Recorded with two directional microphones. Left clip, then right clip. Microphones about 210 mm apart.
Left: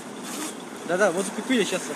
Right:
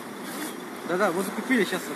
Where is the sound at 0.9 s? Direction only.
45° left (ahead or behind).